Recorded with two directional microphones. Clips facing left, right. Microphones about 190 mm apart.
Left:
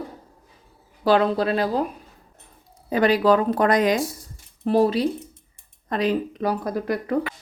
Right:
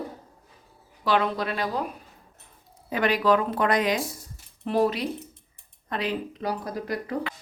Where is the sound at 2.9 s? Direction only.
35° left (ahead or behind).